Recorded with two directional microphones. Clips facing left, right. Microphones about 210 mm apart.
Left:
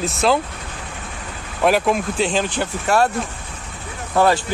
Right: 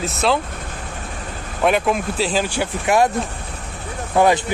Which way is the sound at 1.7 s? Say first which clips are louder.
Left 1 dB; centre (ahead or behind).